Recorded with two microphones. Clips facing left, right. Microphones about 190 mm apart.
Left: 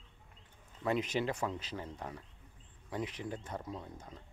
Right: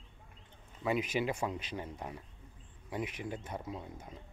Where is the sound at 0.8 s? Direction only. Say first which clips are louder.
Right 1 dB; 10° right (ahead or behind).